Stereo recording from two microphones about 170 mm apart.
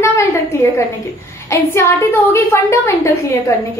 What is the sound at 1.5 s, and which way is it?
A woman's voice, 15° left (ahead or behind).